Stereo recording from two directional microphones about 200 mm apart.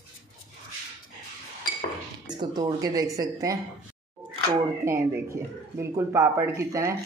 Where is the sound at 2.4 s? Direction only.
20° right (ahead or behind).